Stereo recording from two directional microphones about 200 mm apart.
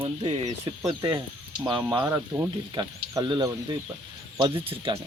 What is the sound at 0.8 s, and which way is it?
Speech, 20° right (ahead or behind).